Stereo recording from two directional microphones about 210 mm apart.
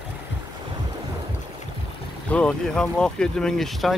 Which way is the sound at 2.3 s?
5° left (ahead or behind).